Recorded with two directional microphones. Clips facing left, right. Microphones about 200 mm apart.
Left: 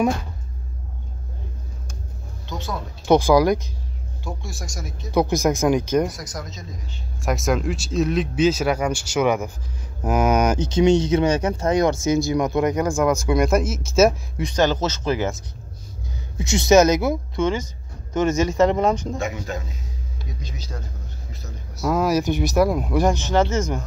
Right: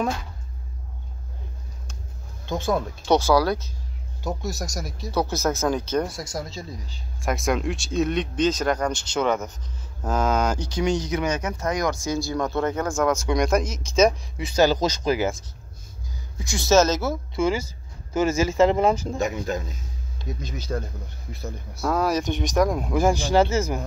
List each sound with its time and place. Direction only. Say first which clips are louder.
2.4 s speech: right 7 dB; 50° right (ahead or behind)
3.1 s speech: left 4 dB; 15° left (ahead or behind)
4.2 s speech: right 5 dB; 40° right (ahead or behind)
5.1 s speech: left 5 dB; 15° left (ahead or behind)
6.0 s speech: left 1 dB; 25° right (ahead or behind)
7.2 s speech: left 2 dB; centre (ahead or behind)
16.3 s speech: left 4 dB; 20° left (ahead or behind)
17.4 s speech: right 3 dB; 10° right (ahead or behind)
19.1 s speech: right 2 dB; 40° right (ahead or behind)
20.4 s speech: right 9 dB; 55° right (ahead or behind)
21.8 s speech: left 3 dB; 5° left (ahead or behind)
23.1 s speech: even; 10° right (ahead or behind)